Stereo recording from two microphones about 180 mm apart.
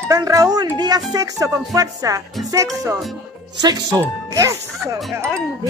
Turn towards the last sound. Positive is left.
turn(degrees=-15)  # may be behind; listen again after turning